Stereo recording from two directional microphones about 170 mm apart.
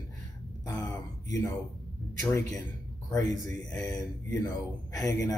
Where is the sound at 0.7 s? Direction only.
20° left (ahead or behind).